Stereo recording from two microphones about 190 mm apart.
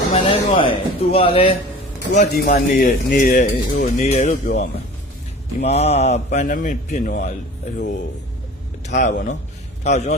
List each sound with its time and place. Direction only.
0.1 s speech: 25° left (ahead or behind)
2.4 s a man's voice: 50° left (ahead or behind)
9.0 s a man's voice: 45° left (ahead or behind)